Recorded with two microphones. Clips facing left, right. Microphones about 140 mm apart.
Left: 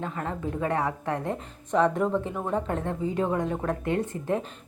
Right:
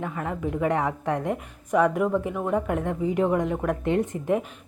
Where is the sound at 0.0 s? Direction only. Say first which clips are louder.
Right 2 dB; 15° right (ahead or behind).